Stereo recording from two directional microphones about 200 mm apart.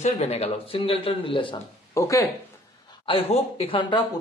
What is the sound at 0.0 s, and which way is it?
A man's voice, 30° left (ahead or behind).